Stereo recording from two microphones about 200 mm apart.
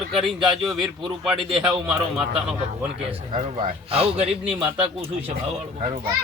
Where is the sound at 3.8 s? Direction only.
30° right (ahead or behind).